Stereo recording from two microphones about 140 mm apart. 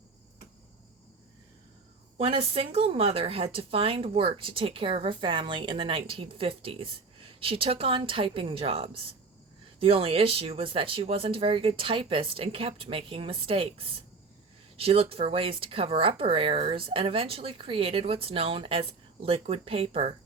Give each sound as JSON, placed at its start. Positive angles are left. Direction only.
{"t": 2.1, "sound": "speech", "side_deg": -40}